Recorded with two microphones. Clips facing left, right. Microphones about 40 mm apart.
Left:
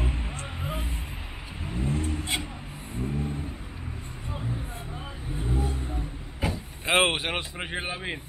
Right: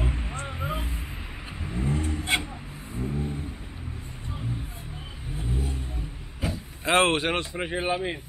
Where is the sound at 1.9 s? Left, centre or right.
Right.